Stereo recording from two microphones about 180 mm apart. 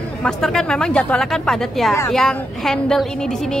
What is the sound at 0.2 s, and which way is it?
Speech, 5° left (ahead or behind).